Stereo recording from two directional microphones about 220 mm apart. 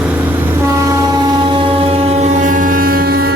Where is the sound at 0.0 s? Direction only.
5° right (ahead or behind).